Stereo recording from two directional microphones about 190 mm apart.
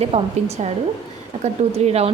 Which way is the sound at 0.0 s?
35° right (ahead or behind).